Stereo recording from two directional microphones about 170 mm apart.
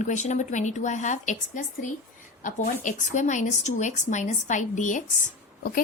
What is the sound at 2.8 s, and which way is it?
Speech, 45° left (ahead or behind).